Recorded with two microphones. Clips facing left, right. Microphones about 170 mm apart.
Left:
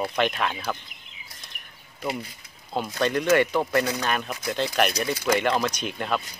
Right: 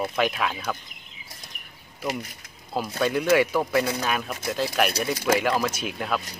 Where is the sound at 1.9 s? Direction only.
5° right (ahead or behind).